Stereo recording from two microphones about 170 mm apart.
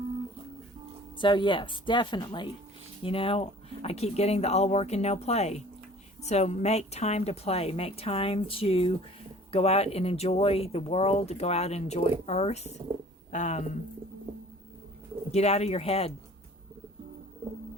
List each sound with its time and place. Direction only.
1.2 s speech: 30° left (ahead or behind); by 13.7 s 45° left (ahead or behind)
15.3 s speech: 40° left (ahead or behind)